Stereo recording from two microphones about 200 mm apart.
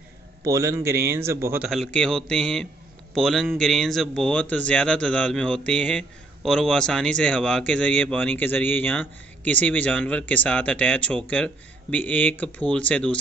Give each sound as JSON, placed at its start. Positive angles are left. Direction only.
{"t": 0.4, "sound": "a man's voice", "side_deg": -15}
{"t": 1.7, "sound": "speech", "side_deg": 0}